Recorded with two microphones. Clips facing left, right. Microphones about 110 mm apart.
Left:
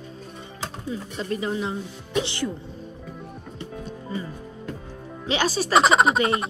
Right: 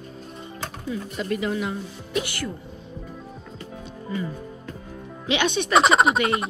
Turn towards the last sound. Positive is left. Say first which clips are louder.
# even
turn(degrees=0)  # may be behind; listen again after turning